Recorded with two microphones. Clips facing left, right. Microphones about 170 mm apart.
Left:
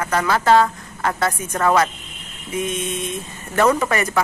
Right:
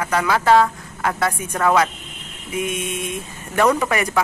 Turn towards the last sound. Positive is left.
turn(degrees=-10)  # may be behind; listen again after turning